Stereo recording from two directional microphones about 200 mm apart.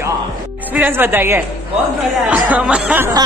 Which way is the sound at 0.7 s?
10° right (ahead or behind).